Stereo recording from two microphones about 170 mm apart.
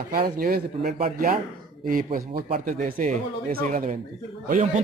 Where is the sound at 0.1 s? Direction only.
60° right (ahead or behind).